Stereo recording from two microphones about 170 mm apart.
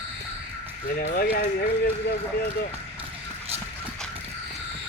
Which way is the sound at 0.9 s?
60° left (ahead or behind).